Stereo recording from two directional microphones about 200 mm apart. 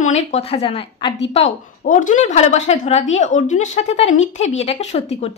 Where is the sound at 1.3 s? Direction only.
35° left (ahead or behind).